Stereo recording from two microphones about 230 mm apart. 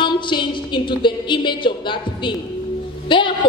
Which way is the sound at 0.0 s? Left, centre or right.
Left.